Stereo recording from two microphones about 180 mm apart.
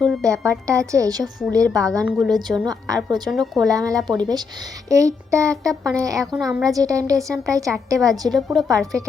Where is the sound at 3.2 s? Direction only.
Centre (ahead or behind).